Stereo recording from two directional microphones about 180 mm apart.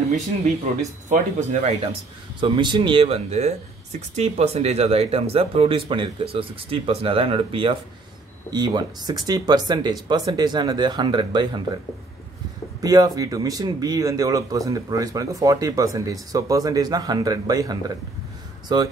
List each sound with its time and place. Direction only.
1.0 s speech: 40° right (ahead or behind)
2.4 s speech: 25° right (ahead or behind)
12.8 s speech: 20° right (ahead or behind)